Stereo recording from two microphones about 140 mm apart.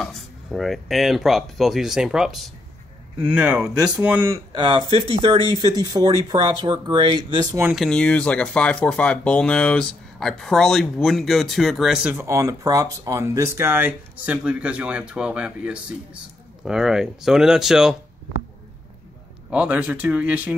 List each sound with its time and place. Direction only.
0.0 s speech: centre (ahead or behind)
4.5 s speech: 35° right (ahead or behind)
7.7 s speech: 5° left (ahead or behind)
19.5 s speech: 10° right (ahead or behind)